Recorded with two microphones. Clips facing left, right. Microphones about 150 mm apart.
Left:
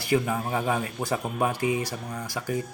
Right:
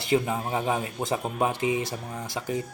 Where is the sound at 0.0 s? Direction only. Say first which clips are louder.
Even; 20° right (ahead or behind).